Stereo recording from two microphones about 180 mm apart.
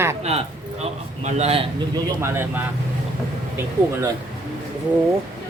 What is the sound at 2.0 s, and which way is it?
Speech, 15° right (ahead or behind).